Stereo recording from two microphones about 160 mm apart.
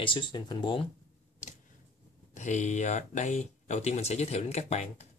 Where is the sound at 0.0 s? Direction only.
30° left (ahead or behind).